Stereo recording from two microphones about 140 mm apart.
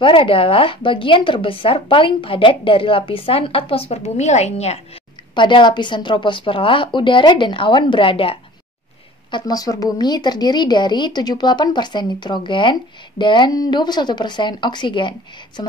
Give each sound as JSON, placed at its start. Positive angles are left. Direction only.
{"t": 0.0, "sound": "speech", "side_deg": 40}
{"t": 5.3, "sound": "speech", "side_deg": 35}
{"t": 9.3, "sound": "speech", "side_deg": 25}